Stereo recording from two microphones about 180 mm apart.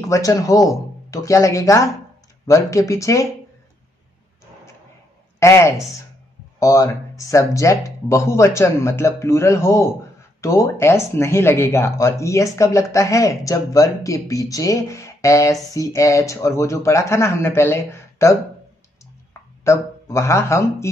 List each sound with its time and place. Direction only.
0.0 s speech: 15° left (ahead or behind)
5.4 s speech: 15° left (ahead or behind)
19.6 s speech: 15° left (ahead or behind)